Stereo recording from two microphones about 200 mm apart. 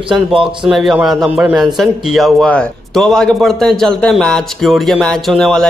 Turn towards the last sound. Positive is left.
turn(degrees=0)  # may be behind; listen again after turning